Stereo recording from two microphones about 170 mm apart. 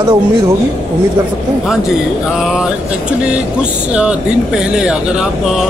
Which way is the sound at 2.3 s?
Centre (ahead or behind).